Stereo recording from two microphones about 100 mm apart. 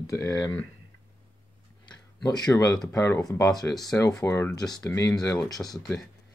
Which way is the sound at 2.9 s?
30° left (ahead or behind).